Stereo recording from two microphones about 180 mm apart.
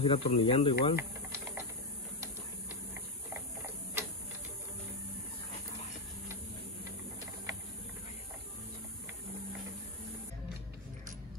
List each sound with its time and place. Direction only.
0.0 s speech: 30° left (ahead or behind)
1.3 s typing: 15° right (ahead or behind)
3.3 s mechanisms: 10° right (ahead or behind)